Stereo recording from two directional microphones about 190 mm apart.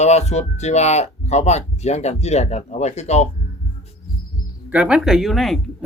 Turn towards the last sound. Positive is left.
turn(degrees=0)  # may be behind; listen again after turning